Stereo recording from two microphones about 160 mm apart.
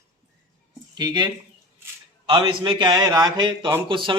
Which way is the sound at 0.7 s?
25° right (ahead or behind).